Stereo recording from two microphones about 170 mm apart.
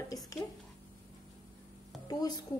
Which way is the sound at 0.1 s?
20° left (ahead or behind).